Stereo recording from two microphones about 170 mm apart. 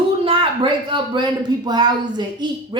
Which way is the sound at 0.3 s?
30° right (ahead or behind).